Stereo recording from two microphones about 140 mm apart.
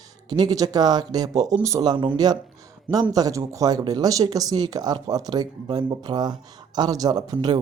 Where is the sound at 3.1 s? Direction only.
25° right (ahead or behind).